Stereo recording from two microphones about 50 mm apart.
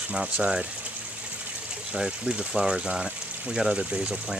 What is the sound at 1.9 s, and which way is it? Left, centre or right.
Speech, centre.